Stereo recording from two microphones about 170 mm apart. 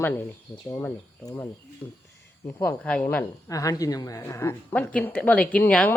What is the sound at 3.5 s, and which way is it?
A woman's voice, 20° left (ahead or behind).